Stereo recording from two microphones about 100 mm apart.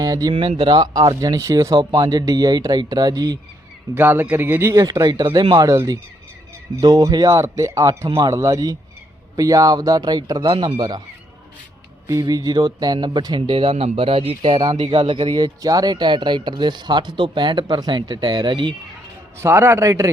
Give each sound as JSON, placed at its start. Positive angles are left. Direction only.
{"t": 0.0, "sound": "speech", "side_deg": -40}
{"t": 0.3, "sound": "a man's voice", "side_deg": -60}
{"t": 3.9, "sound": "a man's voice", "side_deg": -20}
{"t": 4.7, "sound": "a man's voice", "side_deg": -40}
{"t": 5.2, "sound": "speech", "side_deg": -50}
{"t": 5.5, "sound": "a man's voice", "side_deg": -30}
{"t": 7.0, "sound": "a man's voice", "side_deg": -35}
{"t": 12.0, "sound": "speech", "side_deg": -35}
{"t": 19.4, "sound": "a man's voice", "side_deg": -25}